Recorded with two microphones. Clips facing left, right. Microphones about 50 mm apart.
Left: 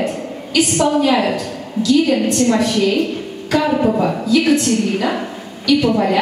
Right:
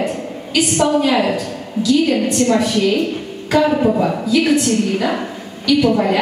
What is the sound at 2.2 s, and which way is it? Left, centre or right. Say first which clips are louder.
Speech: even; right.